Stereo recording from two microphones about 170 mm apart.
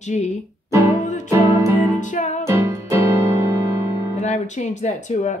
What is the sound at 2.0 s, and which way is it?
Speech, 45° left (ahead or behind).